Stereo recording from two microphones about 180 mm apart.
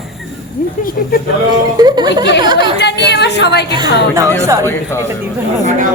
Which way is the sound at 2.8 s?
70° left (ahead or behind).